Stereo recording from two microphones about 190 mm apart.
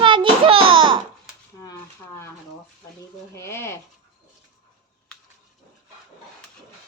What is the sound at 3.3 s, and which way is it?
Speech, 15° left (ahead or behind).